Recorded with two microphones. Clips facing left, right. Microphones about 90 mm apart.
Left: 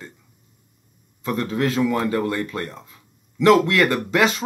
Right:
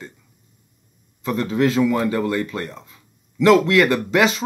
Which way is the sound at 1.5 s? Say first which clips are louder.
Right 4 dB; 5° right (ahead or behind).